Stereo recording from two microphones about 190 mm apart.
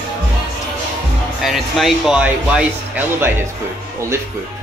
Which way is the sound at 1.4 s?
Centre (ahead or behind).